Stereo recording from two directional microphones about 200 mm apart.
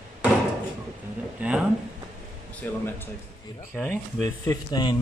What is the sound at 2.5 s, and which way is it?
Speech, 10° left (ahead or behind).